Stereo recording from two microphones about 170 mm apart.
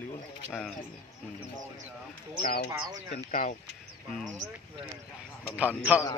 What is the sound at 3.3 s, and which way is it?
Speech, 50° left (ahead or behind).